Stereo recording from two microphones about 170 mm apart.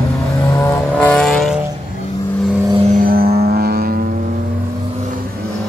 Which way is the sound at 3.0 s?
60° right (ahead or behind).